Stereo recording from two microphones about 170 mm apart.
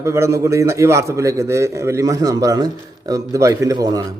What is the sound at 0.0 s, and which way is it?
A man's voice, 15° right (ahead or behind).